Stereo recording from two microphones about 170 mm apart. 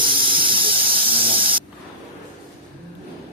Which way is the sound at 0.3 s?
30° right (ahead or behind).